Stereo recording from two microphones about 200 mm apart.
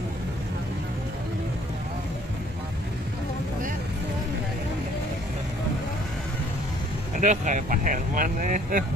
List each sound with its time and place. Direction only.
7.2 s speech: 40° right (ahead or behind)